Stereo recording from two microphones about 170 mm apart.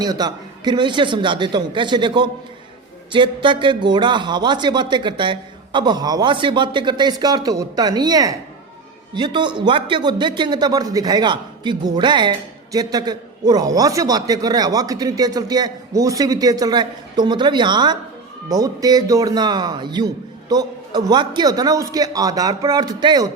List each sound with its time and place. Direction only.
0.0 s a man's voice: 25° right (ahead or behind)